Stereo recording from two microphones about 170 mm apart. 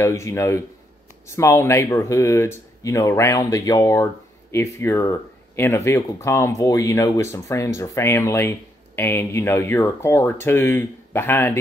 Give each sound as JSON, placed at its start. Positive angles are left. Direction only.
{"t": 0.0, "sound": "speech", "side_deg": 15}